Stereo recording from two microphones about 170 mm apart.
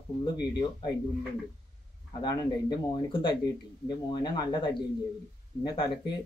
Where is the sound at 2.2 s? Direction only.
25° left (ahead or behind).